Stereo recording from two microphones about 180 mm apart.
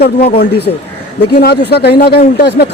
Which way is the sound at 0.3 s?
65° left (ahead or behind).